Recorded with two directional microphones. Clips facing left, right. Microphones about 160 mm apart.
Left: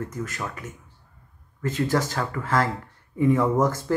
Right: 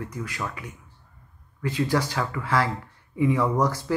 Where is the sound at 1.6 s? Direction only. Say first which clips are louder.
Left 1 dB; 45° left (ahead or behind).